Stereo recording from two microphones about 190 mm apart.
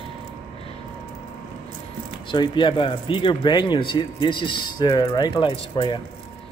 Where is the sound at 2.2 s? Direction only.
25° left (ahead or behind).